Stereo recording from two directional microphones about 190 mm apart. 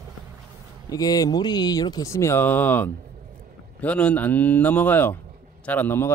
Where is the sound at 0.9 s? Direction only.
20° left (ahead or behind).